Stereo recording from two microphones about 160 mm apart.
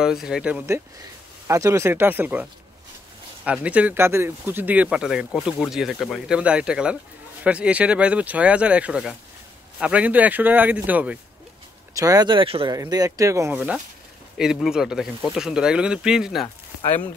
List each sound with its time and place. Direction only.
0.0 s speech: 5° right (ahead or behind)
3.4 s speech: 10° right (ahead or behind)
11.9 s speech: 20° right (ahead or behind)
12.7 s speech: 20° right (ahead or behind); by 16.4 s 5° right (ahead or behind)